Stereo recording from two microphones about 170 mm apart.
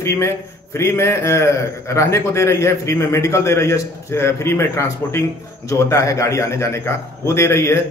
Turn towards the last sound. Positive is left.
turn(degrees=15)  # may be behind; listen again after turning